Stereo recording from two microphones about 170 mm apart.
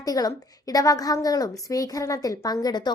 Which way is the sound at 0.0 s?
20° left (ahead or behind).